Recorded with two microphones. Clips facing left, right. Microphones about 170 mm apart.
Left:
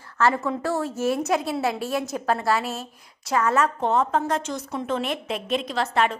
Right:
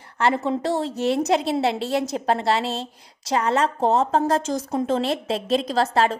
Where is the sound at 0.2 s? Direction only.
25° right (ahead or behind).